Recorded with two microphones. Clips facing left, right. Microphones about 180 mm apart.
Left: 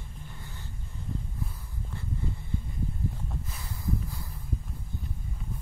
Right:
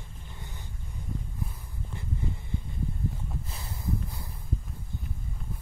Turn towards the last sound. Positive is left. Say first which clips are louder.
# even
turn(degrees=-25)  # may be behind; listen again after turning